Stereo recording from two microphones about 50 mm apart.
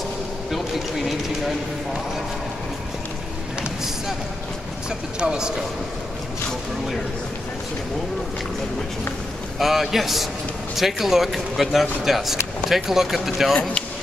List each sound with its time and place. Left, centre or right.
0.5 s speech: centre
4.8 s a man's voice: centre
9.6 s speech: centre